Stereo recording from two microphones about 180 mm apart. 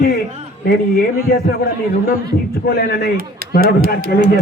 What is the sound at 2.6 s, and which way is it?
Speech, 60° left (ahead or behind).